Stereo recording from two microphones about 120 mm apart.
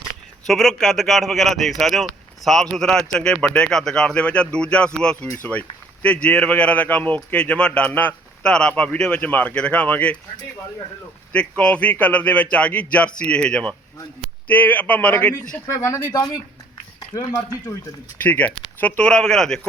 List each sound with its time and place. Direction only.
0.4 s a man's voice: centre (ahead or behind)
11.3 s a man's voice: 10° left (ahead or behind)
15.6 s speech: 25° left (ahead or behind)
16.1 s speech: 35° left (ahead or behind)
18.2 s a man's voice: 15° left (ahead or behind)